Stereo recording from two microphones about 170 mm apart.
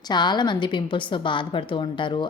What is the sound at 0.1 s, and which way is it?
A woman's voice, 25° left (ahead or behind).